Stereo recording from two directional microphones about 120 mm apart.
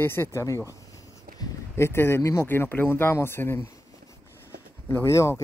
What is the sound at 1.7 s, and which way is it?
Speech, 20° left (ahead or behind).